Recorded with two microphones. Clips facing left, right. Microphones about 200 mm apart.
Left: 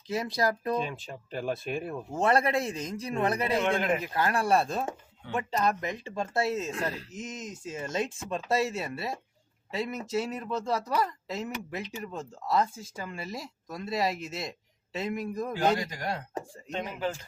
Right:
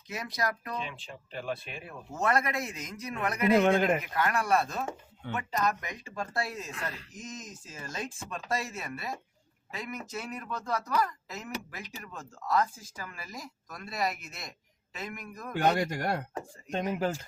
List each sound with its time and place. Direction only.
0.1 s speech: 30° left (ahead or behind)
0.8 s speech: 45° left (ahead or behind)
2.1 s speech: 30° left (ahead or behind)
15.8 s speech: 55° right (ahead or behind)